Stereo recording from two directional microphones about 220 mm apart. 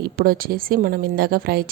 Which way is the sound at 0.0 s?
40° right (ahead or behind).